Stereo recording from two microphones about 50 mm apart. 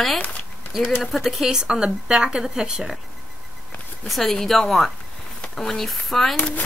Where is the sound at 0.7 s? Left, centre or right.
Centre.